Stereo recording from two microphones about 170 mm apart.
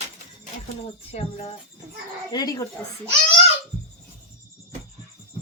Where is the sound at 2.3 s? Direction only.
20° left (ahead or behind).